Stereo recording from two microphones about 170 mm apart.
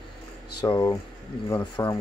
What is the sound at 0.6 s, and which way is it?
Speech, 25° left (ahead or behind).